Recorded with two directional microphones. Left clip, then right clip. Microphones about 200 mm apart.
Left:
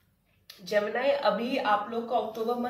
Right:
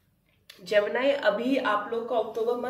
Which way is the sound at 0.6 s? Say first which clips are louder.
Right 3 dB; 35° right (ahead or behind).